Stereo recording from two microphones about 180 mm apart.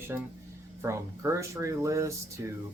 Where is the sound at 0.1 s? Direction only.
10° right (ahead or behind).